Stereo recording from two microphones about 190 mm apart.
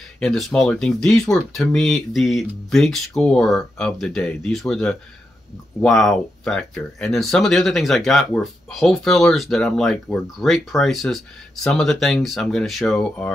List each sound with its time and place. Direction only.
0.2 s speech: 5° left (ahead or behind)